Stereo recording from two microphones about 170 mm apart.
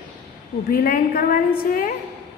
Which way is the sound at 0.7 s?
60° left (ahead or behind).